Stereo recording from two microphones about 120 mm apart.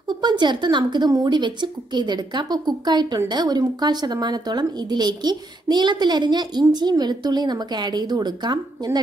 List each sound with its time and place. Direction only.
0.2 s a woman's voice: 40° right (ahead or behind)